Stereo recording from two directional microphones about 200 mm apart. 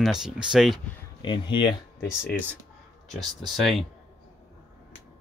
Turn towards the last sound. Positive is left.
turn(degrees=0)  # may be behind; listen again after turning